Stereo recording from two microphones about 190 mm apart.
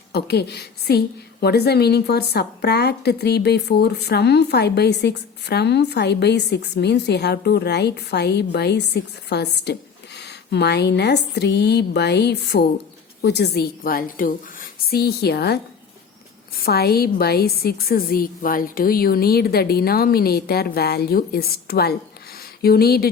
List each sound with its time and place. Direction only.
0.1 s a woman's voice: 60° left (ahead or behind)